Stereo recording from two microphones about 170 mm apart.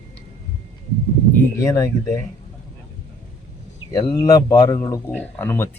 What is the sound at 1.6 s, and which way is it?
Speech, 20° left (ahead or behind).